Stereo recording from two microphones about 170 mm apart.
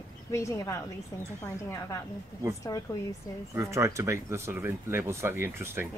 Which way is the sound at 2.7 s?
20° left (ahead or behind).